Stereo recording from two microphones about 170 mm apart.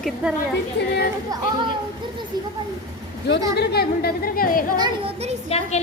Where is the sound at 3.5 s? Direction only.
70° left (ahead or behind).